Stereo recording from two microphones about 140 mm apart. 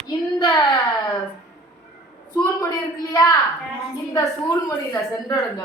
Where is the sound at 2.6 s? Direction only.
25° left (ahead or behind).